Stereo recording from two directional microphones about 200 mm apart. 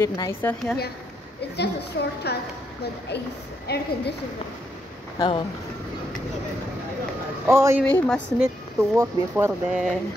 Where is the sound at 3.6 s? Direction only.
55° left (ahead or behind).